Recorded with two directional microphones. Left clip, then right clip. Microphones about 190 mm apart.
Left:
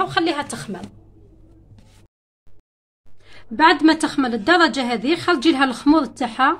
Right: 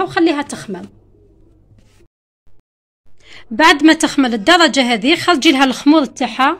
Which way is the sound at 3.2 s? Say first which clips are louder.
Right 4 dB; 25° right (ahead or behind).